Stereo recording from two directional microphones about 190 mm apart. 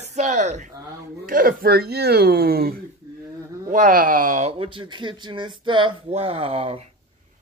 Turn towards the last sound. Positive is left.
turn(degrees=-30)  # may be behind; listen again after turning